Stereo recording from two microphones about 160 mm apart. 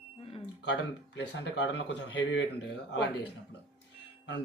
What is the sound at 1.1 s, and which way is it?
Speech, 90° left.